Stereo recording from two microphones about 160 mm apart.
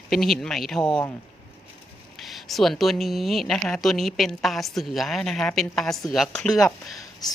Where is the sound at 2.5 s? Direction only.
Centre (ahead or behind).